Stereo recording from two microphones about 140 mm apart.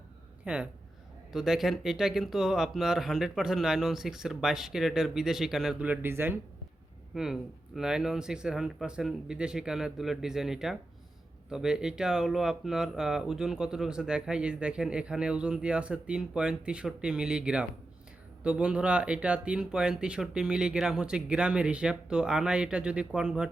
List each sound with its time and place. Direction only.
0.4 s speech: 10° right (ahead or behind)
7.1 s speech: 5° right (ahead or behind)